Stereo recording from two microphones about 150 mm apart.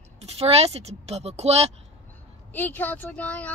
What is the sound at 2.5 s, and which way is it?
Speech, 10° left (ahead or behind).